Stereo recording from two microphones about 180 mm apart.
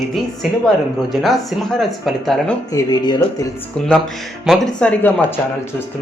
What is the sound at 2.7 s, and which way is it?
Speech, 20° left (ahead or behind).